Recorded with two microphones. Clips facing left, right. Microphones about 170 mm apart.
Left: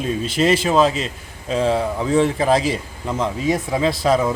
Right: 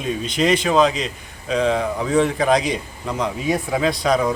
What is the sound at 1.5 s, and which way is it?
Speech, 30° left (ahead or behind).